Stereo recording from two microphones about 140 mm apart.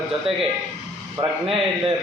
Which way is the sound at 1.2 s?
35° right (ahead or behind).